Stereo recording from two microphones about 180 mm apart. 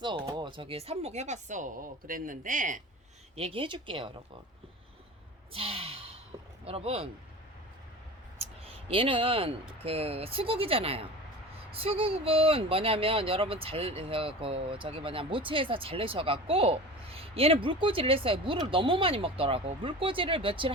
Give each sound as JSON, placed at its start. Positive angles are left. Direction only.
{"t": 0.0, "sound": "speech", "side_deg": -25}
{"t": 3.3, "sound": "speech", "side_deg": -30}
{"t": 5.5, "sound": "sigh", "side_deg": -35}
{"t": 6.7, "sound": "speech", "side_deg": -35}
{"t": 8.4, "sound": "speech", "side_deg": -30}